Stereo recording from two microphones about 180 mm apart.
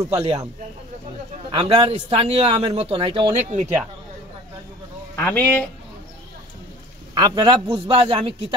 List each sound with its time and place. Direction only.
0.1 s a man's voice: 30° right (ahead or behind)
1.5 s a man's voice: 30° right (ahead or behind)
5.1 s a man's voice: 10° left (ahead or behind)
7.2 s a man's voice: 25° right (ahead or behind)